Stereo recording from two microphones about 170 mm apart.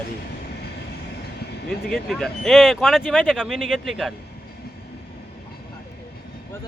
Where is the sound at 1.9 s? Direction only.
Centre (ahead or behind).